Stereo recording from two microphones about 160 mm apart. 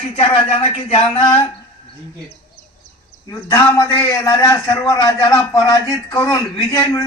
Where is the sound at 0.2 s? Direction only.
35° left (ahead or behind).